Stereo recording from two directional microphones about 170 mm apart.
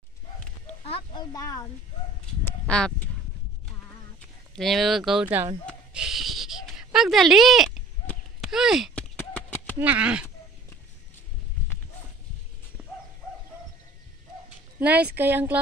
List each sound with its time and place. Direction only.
0.8 s a sound: 25° left (ahead or behind)
2.4 s speech: 5° left (ahead or behind)
4.6 s speech: centre (ahead or behind)
5.9 s a sound: centre (ahead or behind)
9.8 s speech: 10° right (ahead or behind)
14.8 s speech: 10° right (ahead or behind)